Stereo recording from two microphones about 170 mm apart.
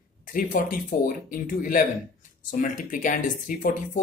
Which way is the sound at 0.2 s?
55° left (ahead or behind).